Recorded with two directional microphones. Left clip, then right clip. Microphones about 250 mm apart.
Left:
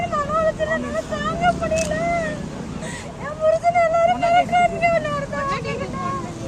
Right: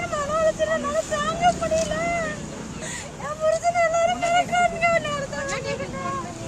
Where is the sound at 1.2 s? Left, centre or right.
Centre.